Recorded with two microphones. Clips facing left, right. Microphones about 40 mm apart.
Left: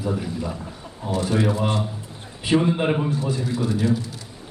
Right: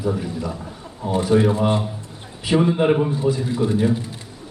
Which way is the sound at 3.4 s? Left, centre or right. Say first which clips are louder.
Right 3 dB; right.